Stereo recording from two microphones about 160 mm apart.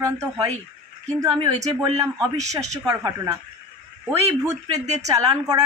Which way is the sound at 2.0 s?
20° right (ahead or behind).